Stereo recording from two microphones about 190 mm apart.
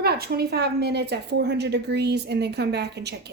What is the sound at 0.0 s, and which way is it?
A woman's voice, 55° right (ahead or behind).